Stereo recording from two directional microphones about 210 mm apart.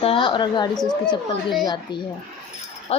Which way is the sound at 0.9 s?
5° left (ahead or behind).